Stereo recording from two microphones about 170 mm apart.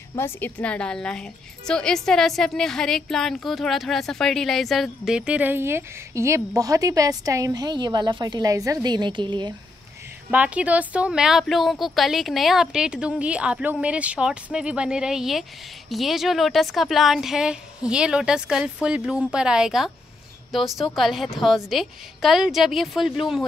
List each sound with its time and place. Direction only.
0.1 s a woman's voice: 10° left (ahead or behind); by 9.5 s 25° right (ahead or behind)
10.3 s a woman's voice: 10° right (ahead or behind)